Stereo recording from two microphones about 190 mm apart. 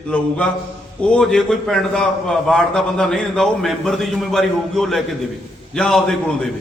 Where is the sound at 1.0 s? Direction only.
5° left (ahead or behind).